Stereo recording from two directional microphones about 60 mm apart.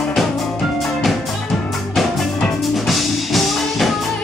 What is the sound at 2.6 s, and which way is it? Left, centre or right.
Music, centre.